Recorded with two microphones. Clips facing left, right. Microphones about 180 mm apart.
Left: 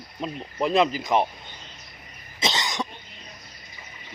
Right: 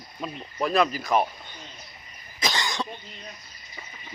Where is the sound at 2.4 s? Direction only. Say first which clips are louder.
Left 1 dB; 20° left (ahead or behind).